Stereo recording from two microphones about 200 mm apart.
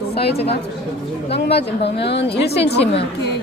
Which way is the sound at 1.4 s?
55° left (ahead or behind).